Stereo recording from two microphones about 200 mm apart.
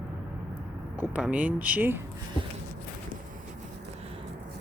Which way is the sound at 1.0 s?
5° right (ahead or behind).